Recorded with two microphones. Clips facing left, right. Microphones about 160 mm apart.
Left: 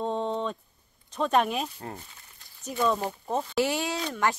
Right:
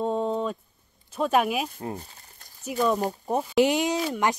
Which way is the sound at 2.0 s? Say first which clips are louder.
Right 5 dB; 35° right (ahead or behind).